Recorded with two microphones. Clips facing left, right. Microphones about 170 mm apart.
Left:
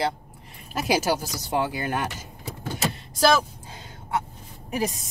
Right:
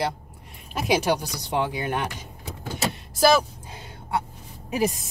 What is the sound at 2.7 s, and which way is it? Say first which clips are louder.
Speech: right 1 dB; 10° right (ahead or behind).